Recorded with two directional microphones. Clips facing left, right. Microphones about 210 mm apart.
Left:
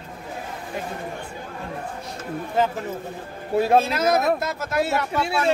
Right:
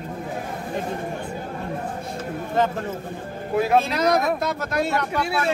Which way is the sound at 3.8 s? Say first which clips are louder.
Even; 5° left (ahead or behind).